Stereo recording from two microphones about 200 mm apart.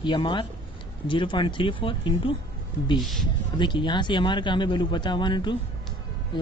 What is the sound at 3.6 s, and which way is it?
Speech, 25° left (ahead or behind).